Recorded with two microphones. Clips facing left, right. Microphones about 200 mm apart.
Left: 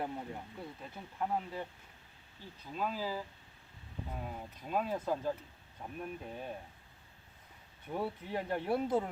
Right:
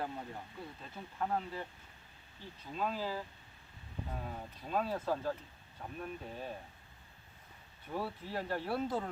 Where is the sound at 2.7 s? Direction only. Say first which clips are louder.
Even; 5° left (ahead or behind).